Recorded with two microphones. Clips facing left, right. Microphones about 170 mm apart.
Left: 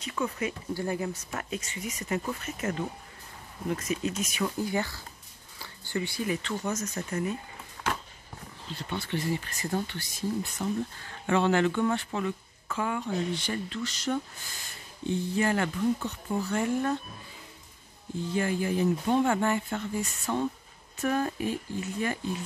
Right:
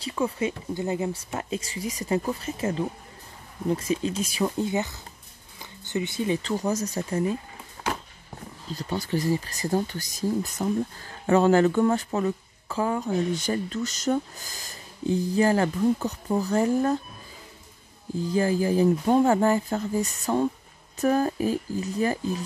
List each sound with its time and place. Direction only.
0.0 s speech: 30° right (ahead or behind)
8.6 s speech: 40° right (ahead or behind)
18.2 s speech: 35° right (ahead or behind)